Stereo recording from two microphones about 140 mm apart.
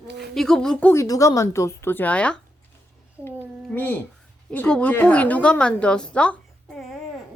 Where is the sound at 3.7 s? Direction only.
15° left (ahead or behind).